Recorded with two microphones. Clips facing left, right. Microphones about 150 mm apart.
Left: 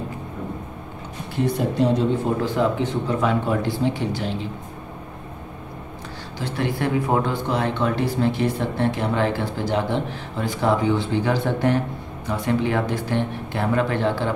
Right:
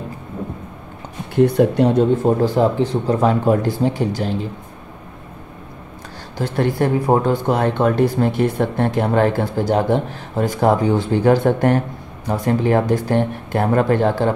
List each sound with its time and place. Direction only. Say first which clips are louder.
1.3 s speech: right 9 dB; 60° right (ahead or behind)
2.4 s speech: right 5 dB; 35° right (ahead or behind)
6.3 s speech: right 6 dB; 45° right (ahead or behind)